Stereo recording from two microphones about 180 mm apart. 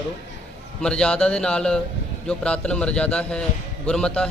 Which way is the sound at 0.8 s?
5° left (ahead or behind).